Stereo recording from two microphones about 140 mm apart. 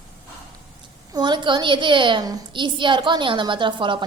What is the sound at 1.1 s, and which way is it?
A woman's voice, 30° right (ahead or behind).